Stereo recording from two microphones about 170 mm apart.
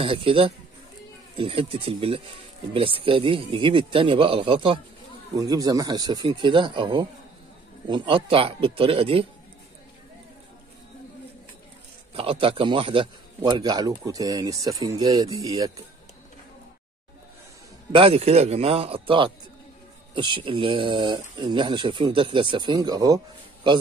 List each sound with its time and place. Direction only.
0.0 s speech: 30° right (ahead or behind)
5.3 s a man's voice: 20° right (ahead or behind)
12.1 s a man's voice: 35° right (ahead or behind)
17.9 s a man's voice: 35° right (ahead or behind)